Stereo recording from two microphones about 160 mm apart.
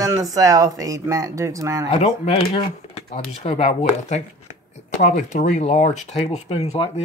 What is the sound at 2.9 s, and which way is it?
Speech, 40° left (ahead or behind).